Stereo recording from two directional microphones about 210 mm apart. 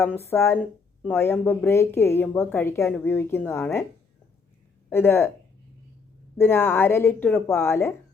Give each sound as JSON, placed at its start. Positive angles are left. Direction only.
{"t": 0.3, "sound": "speech", "side_deg": 10}
{"t": 4.9, "sound": "speech", "side_deg": 10}
{"t": 6.3, "sound": "speech", "side_deg": 10}